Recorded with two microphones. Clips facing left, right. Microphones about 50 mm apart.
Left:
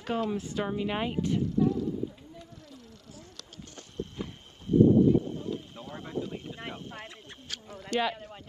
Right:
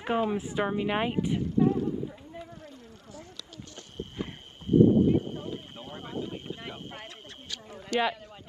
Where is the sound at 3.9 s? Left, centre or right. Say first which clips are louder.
Even; right.